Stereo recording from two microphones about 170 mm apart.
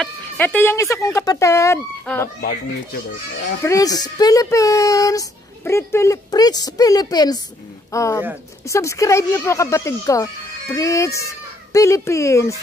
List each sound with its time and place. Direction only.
0.0 s speech: 10° left (ahead or behind)
3.6 s speech: 20° left (ahead or behind)